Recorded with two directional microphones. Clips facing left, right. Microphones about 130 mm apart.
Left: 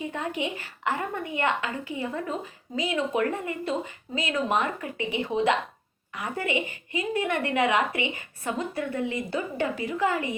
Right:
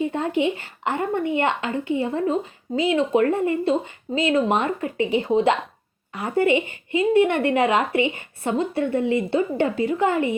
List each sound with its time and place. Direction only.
0.0 s speech: 30° right (ahead or behind)